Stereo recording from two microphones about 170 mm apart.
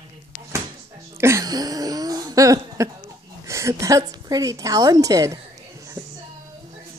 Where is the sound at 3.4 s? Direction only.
15° right (ahead or behind).